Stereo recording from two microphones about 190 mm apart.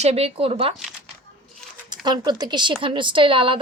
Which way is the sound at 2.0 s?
25° right (ahead or behind).